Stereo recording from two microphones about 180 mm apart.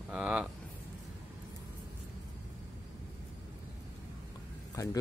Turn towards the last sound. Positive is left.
turn(degrees=20)  # may be behind; listen again after turning